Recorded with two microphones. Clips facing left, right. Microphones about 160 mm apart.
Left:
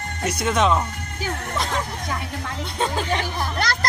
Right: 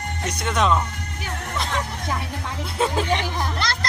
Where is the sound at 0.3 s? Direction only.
5° left (ahead or behind).